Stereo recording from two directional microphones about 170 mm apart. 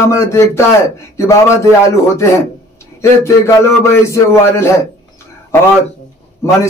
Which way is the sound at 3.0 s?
15° left (ahead or behind).